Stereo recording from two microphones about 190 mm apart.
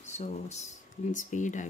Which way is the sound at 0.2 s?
35° left (ahead or behind).